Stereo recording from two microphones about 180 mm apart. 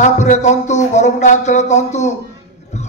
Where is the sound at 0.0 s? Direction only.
40° left (ahead or behind).